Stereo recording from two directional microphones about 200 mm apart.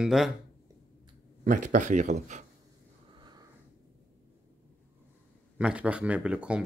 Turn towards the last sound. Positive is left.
turn(degrees=-5)  # may be behind; listen again after turning